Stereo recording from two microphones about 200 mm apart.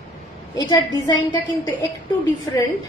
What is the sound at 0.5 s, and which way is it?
A woman's voice, 20° left (ahead or behind).